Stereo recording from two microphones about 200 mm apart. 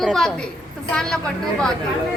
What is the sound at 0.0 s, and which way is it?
A woman's voice, centre (ahead or behind).